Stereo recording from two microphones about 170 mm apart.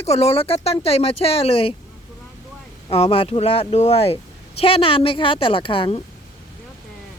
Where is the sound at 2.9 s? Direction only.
35° left (ahead or behind).